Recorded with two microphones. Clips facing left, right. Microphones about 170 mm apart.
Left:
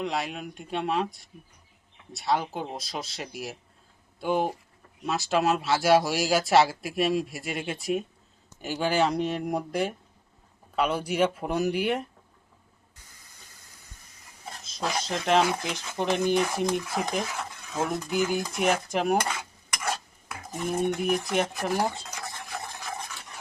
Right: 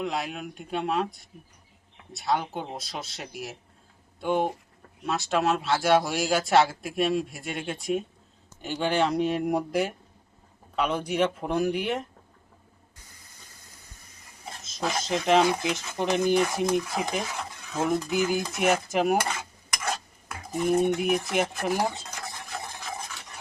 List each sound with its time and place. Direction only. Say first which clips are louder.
0.0 s a man's voice: even; centre (ahead or behind)
2.1 s a man's voice: even; centre (ahead or behind)
14.6 s a man's voice: right 1 dB; centre (ahead or behind)
22.5 s stir: even; centre (ahead or behind)